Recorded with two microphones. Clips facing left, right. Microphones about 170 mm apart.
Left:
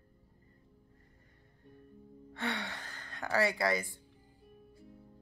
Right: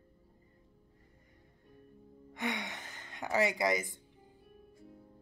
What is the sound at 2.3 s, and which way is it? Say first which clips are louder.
A woman's voice: even; 15° right (ahead or behind).